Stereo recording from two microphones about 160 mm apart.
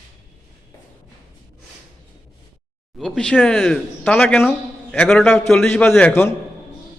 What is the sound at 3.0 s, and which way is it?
A man's voice, 5° left (ahead or behind).